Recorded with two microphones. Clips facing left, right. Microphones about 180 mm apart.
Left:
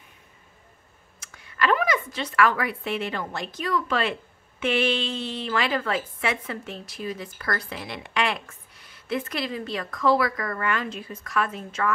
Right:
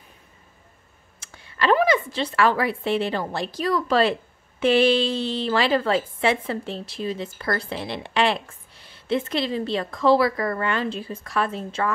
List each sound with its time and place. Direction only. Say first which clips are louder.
1.2 s a woman's voice: right 2 dB; 30° right (ahead or behind)